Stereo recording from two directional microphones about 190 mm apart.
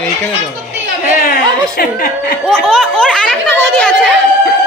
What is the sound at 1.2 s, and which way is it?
Speech, 55° left (ahead or behind).